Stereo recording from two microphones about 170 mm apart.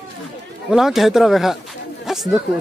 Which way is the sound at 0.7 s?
Centre (ahead or behind).